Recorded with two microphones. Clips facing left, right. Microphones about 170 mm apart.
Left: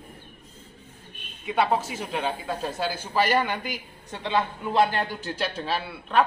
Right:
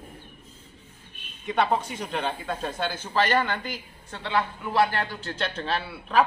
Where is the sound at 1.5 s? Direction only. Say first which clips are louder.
Left 1 dB; 5° left (ahead or behind).